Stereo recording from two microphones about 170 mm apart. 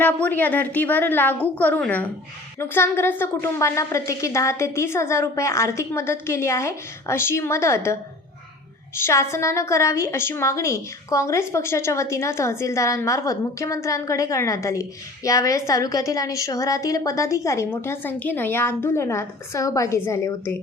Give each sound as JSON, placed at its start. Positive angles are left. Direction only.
{"t": 0.0, "sound": "a woman's voice", "side_deg": 10}
{"t": 9.0, "sound": "a woman's voice", "side_deg": 15}